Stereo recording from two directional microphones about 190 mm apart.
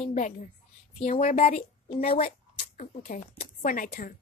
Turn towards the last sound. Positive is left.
turn(degrees=50)  # may be behind; listen again after turning